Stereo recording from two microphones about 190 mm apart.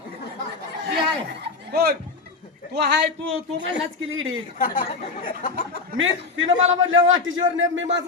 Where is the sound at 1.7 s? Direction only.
50° right (ahead or behind).